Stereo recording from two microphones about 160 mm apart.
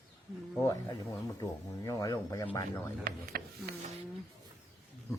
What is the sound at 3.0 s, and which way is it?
Speech, 75° right (ahead or behind).